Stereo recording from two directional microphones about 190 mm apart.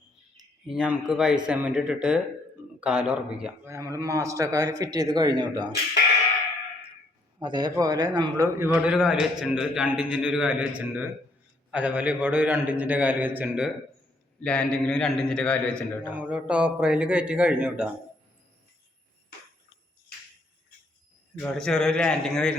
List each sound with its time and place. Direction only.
0.7 s a man's voice: 5° right (ahead or behind)
3.7 s a man's voice: 15° right (ahead or behind)
7.3 s a man's voice: 20° right (ahead or behind)
14.4 s a man's voice: 5° left (ahead or behind)
16.0 s a man's voice: 5° right (ahead or behind)
21.4 s a man's voice: 5° left (ahead or behind)